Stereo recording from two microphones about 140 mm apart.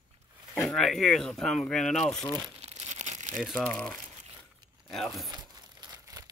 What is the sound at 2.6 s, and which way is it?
Crumpling, 50° right (ahead or behind).